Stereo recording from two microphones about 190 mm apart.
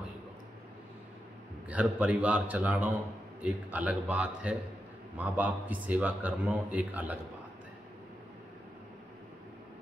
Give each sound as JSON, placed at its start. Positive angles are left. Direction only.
{"t": 1.7, "sound": "a man's voice", "side_deg": -5}